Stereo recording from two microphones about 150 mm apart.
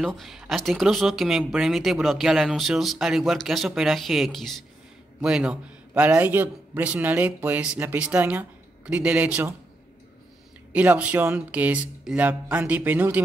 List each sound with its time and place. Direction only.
0.0 s a man's voice: centre (ahead or behind)
10.7 s a man's voice: 10° right (ahead or behind)